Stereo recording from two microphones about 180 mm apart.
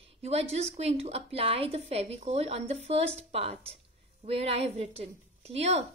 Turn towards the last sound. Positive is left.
turn(degrees=-35)  # may be behind; listen again after turning